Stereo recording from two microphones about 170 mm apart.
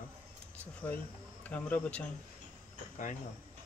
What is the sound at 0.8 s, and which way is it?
Speech, 10° left (ahead or behind).